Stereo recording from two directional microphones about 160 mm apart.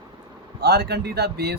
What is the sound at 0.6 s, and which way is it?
Speech, 85° right.